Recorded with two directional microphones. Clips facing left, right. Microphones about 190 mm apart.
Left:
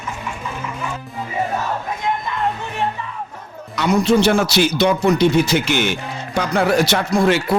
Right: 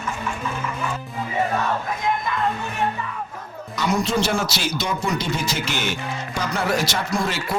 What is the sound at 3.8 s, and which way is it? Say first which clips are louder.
Speech: left 6 dB; 65° left (ahead or behind).